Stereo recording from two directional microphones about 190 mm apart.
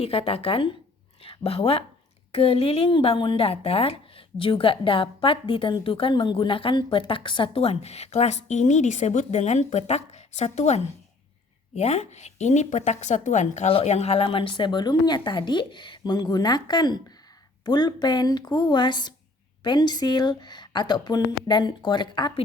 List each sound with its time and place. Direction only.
0.0 s a woman's voice: 30° left (ahead or behind)